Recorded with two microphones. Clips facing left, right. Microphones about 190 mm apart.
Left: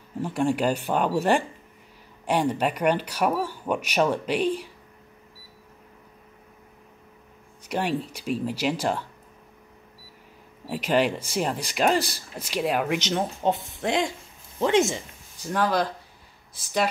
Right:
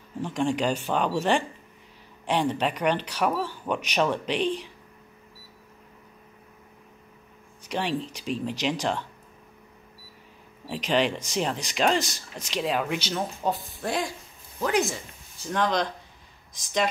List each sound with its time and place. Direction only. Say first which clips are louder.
0.2 s speech: left 2 dB; 10° left (ahead or behind)
7.6 s speech: left 2 dB; 10° left (ahead or behind)
10.7 s speech: left 2 dB; 10° left (ahead or behind)
12.9 s speech: left 3 dB; 20° left (ahead or behind)
15.4 s speech: left 2 dB; 5° left (ahead or behind)